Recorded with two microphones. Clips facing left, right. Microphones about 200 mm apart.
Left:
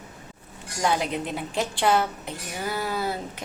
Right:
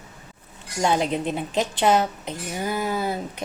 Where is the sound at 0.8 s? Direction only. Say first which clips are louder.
Right 3 dB; 25° right (ahead or behind).